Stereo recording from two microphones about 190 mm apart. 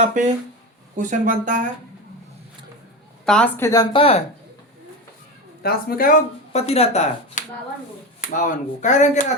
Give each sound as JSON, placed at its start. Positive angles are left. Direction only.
{"t": 0.0, "sound": "speech", "side_deg": -40}
{"t": 3.2, "sound": "speech", "side_deg": 5}
{"t": 3.7, "sound": "speech", "side_deg": 25}
{"t": 5.6, "sound": "speech", "side_deg": 50}